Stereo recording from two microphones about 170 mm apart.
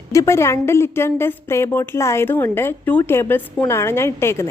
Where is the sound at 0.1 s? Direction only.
15° left (ahead or behind).